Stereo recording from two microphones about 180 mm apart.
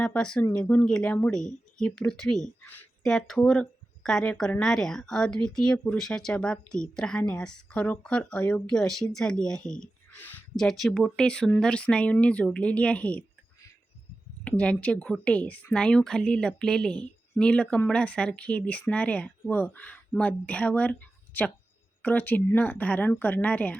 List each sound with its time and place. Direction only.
0.0 s speech: 5° left (ahead or behind)